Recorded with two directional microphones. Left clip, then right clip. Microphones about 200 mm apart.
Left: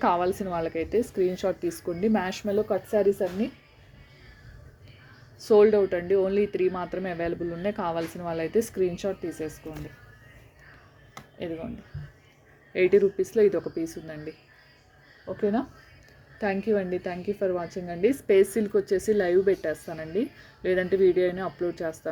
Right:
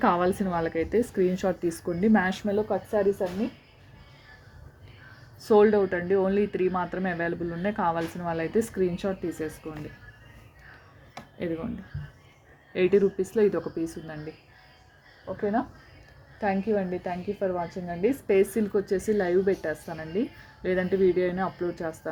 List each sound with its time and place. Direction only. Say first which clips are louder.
0.0 s a woman's voice: even; 5° right (ahead or behind); by 3.2 s 10° left (ahead or behind)
5.4 s speech: left 1 dB; 10° left (ahead or behind)
11.3 s a woman's voice: right 2 dB; centre (ahead or behind)
12.7 s speech: left 2 dB; 5° left (ahead or behind)
16.4 s a woman's voice: left 1 dB; 20° left (ahead or behind)